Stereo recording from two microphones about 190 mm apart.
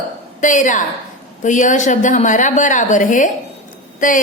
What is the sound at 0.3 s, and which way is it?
A woman's voice, 40° left (ahead or behind).